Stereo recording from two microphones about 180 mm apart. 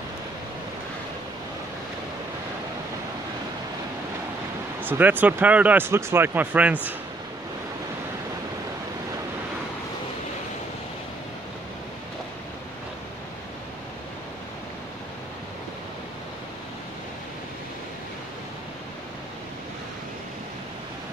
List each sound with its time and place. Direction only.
4.8 s speech: 10° right (ahead or behind)